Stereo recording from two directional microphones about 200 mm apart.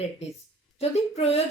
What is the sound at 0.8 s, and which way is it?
Speech, 30° left (ahead or behind).